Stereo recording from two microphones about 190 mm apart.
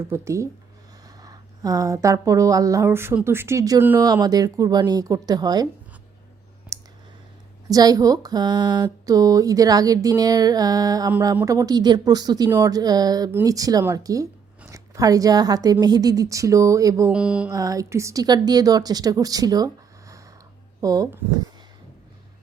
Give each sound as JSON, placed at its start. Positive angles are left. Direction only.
{"t": 0.0, "sound": "speech", "side_deg": -15}
{"t": 6.7, "sound": "clicking", "side_deg": -15}
{"t": 7.7, "sound": "speech", "side_deg": -20}
{"t": 17.1, "sound": "mantra", "side_deg": -5}
{"t": 17.5, "sound": "speech", "side_deg": -20}